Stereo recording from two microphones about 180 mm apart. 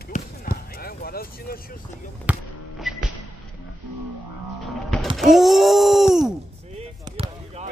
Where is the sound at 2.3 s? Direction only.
10° right (ahead or behind).